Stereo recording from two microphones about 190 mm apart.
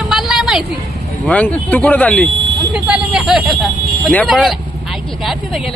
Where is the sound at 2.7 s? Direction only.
5° right (ahead or behind).